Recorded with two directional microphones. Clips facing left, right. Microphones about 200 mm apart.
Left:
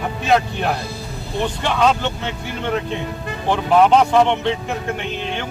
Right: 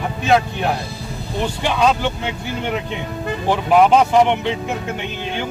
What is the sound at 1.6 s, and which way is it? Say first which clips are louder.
Speech: right 1 dB; 10° right (ahead or behind).